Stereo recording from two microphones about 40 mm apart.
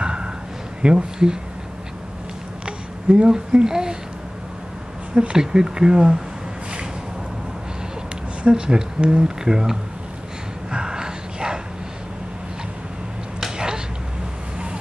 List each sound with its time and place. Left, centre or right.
0.0 s a sound: right
0.8 s speech: centre
2.6 s babbling: right
5.1 s speech: right
8.5 s speech: centre
10.7 s a sound: centre